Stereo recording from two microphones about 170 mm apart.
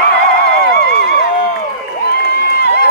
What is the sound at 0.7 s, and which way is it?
Music, 65° left (ahead or behind).